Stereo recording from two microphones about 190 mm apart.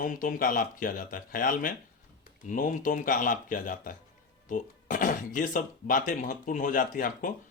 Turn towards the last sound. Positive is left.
turn(degrees=45)  # may be behind; listen again after turning